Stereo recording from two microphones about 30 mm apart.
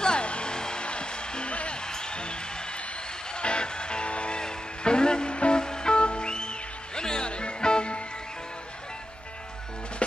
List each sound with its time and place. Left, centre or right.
0.0 s music: left
1.5 s music: left
1.9 s music: left
3.3 s music: left